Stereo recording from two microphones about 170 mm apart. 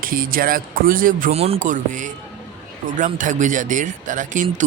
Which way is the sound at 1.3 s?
35° right (ahead or behind).